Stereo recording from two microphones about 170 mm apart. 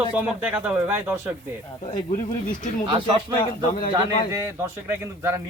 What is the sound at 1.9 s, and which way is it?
Speech, 50° left (ahead or behind).